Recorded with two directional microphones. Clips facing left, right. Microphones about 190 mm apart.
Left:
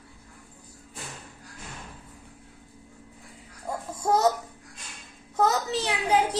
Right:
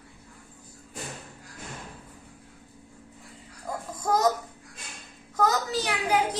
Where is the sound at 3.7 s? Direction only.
30° left (ahead or behind).